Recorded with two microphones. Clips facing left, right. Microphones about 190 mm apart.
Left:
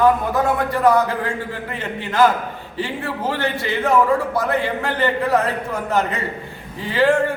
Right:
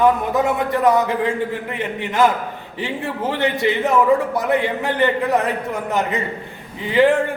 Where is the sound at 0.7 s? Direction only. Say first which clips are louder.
Even; 20° right (ahead or behind).